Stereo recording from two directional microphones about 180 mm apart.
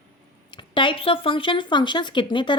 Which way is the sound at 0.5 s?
25° left (ahead or behind).